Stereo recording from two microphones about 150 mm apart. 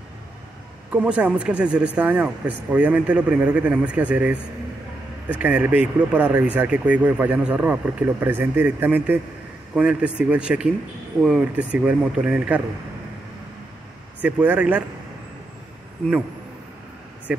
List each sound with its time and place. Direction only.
0.9 s speech: 10° right (ahead or behind)
5.4 s speech: 10° right (ahead or behind)
14.2 s speech: 10° right (ahead or behind)
17.3 s speech: 5° right (ahead or behind)